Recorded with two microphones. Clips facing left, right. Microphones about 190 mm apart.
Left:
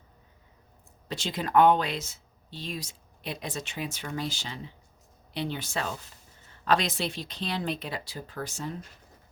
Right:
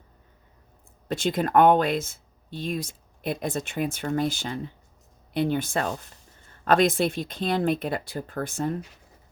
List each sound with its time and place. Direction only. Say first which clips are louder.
1.0 s speech: right 8 dB; 50° right (ahead or behind)